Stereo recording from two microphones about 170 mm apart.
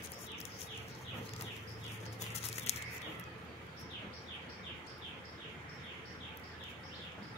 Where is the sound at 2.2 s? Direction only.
40° left (ahead or behind).